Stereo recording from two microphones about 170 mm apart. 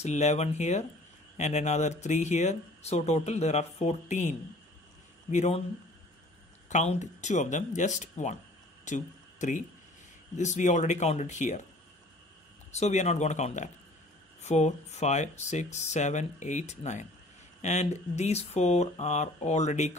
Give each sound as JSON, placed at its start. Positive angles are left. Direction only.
{"t": 0.0, "sound": "speech", "side_deg": 40}
{"t": 5.3, "sound": "speech", "side_deg": 40}
{"t": 6.7, "sound": "speech", "side_deg": 45}
{"t": 8.8, "sound": "a sound", "side_deg": 45}
{"t": 10.3, "sound": "speech", "side_deg": 45}
{"t": 12.7, "sound": "speech", "side_deg": 45}